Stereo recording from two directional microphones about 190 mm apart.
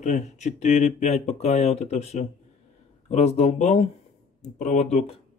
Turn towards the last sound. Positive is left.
turn(degrees=35)  # may be behind; listen again after turning